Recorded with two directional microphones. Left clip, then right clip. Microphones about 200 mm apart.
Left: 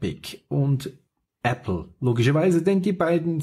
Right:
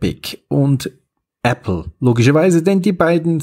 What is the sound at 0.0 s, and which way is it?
Speech, 35° right (ahead or behind).